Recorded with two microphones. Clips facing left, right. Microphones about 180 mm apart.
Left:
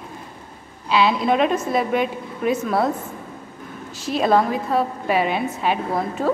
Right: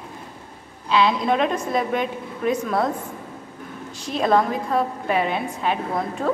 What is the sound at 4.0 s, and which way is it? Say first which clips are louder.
A woman's voice: left 1 dB; 5° left (ahead or behind).